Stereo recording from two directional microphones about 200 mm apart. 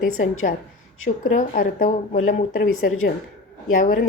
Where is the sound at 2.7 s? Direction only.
90° left.